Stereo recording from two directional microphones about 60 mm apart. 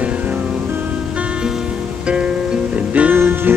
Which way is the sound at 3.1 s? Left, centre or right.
Right.